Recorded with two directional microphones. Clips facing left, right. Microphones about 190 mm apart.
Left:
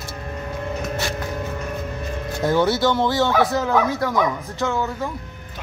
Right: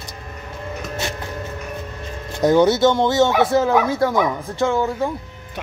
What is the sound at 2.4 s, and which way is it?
Speech, 20° right (ahead or behind).